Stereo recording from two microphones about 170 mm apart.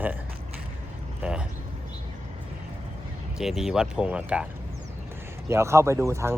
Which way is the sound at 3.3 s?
Centre (ahead or behind).